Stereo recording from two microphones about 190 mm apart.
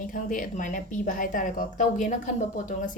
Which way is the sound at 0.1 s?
45° left (ahead or behind).